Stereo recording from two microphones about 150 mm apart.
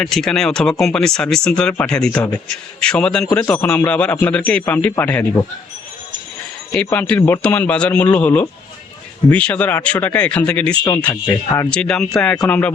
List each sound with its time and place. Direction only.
0.0 s a man's voice: 5° left (ahead or behind)
6.7 s a man's voice: 10° left (ahead or behind)
10.8 s speech: 25° left (ahead or behind)
11.7 s a man's voice: 5° left (ahead or behind)